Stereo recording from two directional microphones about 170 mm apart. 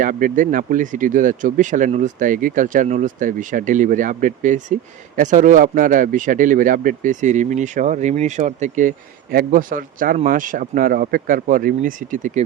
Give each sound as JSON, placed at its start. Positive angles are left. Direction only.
{"t": 0.0, "sound": "speech", "side_deg": -50}